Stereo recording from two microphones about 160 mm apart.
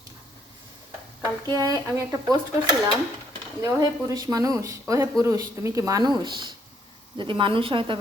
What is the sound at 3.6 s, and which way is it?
A woman's voice, 20° right (ahead or behind).